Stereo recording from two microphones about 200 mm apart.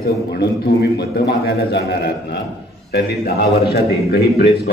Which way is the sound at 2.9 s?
50° left (ahead or behind).